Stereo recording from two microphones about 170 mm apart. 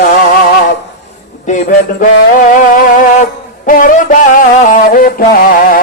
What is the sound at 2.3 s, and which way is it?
Music, 50° left (ahead or behind).